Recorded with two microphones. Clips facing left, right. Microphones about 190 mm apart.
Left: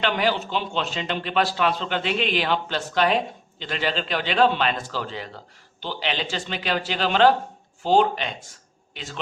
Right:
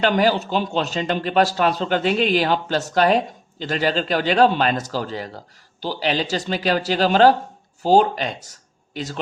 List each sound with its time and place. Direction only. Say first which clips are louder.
0.0 s a man's voice: right 5 dB; 40° right (ahead or behind)